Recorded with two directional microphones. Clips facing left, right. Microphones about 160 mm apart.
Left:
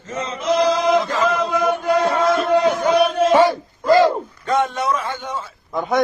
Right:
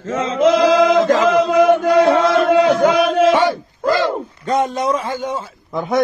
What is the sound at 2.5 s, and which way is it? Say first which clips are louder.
Music: right 4 dB; 90° right.